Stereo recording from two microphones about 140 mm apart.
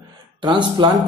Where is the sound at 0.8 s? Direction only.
35° right (ahead or behind).